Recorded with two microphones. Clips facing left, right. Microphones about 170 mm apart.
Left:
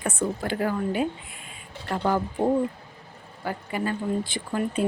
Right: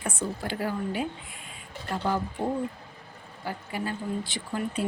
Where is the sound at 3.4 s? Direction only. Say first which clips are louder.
Left 4 dB; 55° left (ahead or behind).